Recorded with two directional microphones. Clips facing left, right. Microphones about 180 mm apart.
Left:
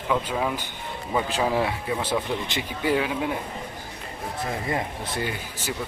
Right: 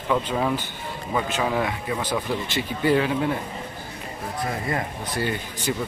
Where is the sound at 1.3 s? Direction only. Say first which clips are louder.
Left 1 dB; 30° left (ahead or behind); by 3.3 s 10° left (ahead or behind).